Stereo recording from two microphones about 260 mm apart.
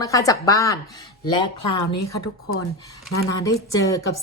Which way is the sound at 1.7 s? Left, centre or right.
Left.